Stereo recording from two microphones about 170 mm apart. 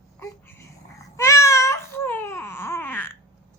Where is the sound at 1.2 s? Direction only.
15° left (ahead or behind).